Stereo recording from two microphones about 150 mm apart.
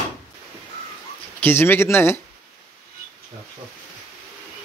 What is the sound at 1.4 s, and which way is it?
Speech, 15° left (ahead or behind).